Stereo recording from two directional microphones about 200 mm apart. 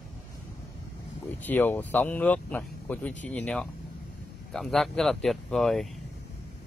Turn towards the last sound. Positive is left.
turn(degrees=0)  # may be behind; listen again after turning